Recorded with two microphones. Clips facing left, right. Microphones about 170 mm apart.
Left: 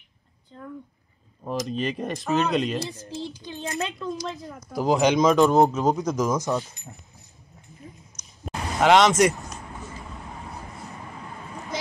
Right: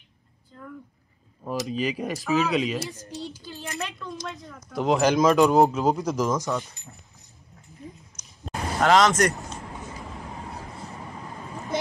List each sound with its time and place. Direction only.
1.5 s speech: 5° right (ahead or behind)
3.2 s speech: 15° right (ahead or behind)
3.4 s speech: 20° left (ahead or behind)
4.0 s speech: centre (ahead or behind)
6.3 s speech: 15° left (ahead or behind)
8.7 s speech: centre (ahead or behind)